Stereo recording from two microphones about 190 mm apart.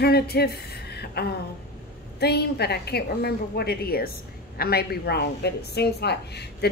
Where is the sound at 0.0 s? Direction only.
55° left (ahead or behind).